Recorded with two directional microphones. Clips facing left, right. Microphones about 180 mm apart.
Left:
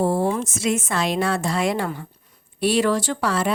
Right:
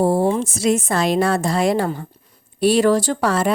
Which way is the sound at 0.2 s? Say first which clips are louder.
Right 4 dB; 25° right (ahead or behind).